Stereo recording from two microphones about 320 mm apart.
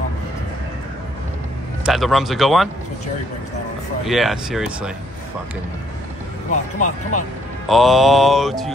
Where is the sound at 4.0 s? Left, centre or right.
Centre.